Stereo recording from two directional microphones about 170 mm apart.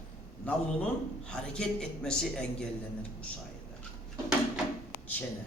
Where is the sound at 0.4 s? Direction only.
5° left (ahead or behind).